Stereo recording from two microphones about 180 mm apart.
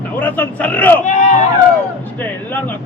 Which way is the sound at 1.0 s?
40° left (ahead or behind).